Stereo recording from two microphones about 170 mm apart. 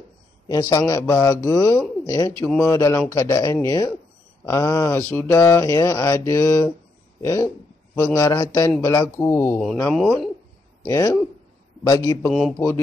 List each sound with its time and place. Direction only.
0.5 s a man's voice: 20° left (ahead or behind)
9.9 s speech: centre (ahead or behind)
10.8 s a man's voice: 20° left (ahead or behind)
12.3 s speech: centre (ahead or behind)
12.5 s speech: 15° left (ahead or behind)